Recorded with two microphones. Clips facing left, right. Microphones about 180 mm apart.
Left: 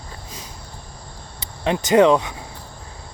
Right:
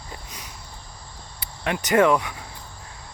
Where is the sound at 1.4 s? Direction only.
25° left (ahead or behind).